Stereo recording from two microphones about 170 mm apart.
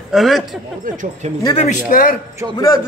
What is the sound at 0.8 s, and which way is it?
Speech, 50° right (ahead or behind).